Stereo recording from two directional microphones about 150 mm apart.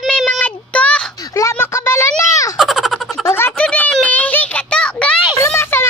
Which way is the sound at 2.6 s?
Centre (ahead or behind).